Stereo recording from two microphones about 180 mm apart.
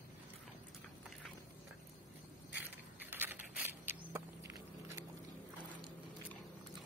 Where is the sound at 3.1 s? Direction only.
10° right (ahead or behind).